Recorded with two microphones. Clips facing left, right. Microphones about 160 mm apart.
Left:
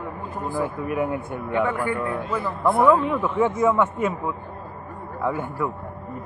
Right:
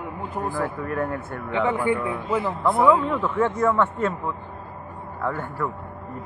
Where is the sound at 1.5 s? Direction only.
20° right (ahead or behind).